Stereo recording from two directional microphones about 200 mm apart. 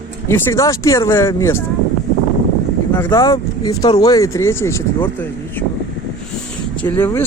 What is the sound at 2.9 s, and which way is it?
Speech, 15° left (ahead or behind).